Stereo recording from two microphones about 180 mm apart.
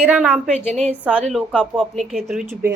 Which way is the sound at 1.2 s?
Centre (ahead or behind).